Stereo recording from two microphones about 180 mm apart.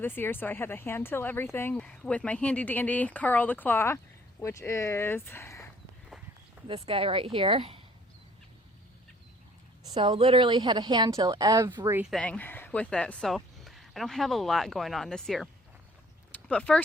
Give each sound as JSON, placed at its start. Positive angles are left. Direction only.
{"t": 0.0, "sound": "speech", "side_deg": 10}
{"t": 6.7, "sound": "a woman's voice", "side_deg": -30}
{"t": 9.8, "sound": "a woman's voice", "side_deg": -30}
{"t": 12.1, "sound": "speech", "side_deg": 5}
{"t": 16.3, "sound": "a sound", "side_deg": 5}